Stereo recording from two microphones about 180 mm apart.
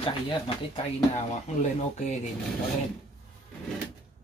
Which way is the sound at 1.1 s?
40° left (ahead or behind).